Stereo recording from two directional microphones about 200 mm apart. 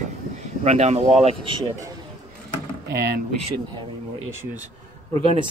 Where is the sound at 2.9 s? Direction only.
55° right (ahead or behind).